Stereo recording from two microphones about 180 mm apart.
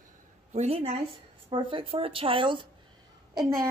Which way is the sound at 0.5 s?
35° right (ahead or behind).